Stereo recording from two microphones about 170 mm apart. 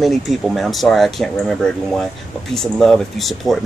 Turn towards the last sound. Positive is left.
turn(degrees=0)  # may be behind; listen again after turning